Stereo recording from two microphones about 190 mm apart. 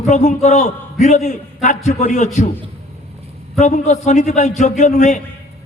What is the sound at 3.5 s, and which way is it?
A man's voice, 40° left (ahead or behind).